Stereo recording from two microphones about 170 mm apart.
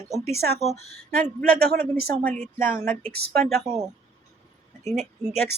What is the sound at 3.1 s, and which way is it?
Speech, 70° right (ahead or behind).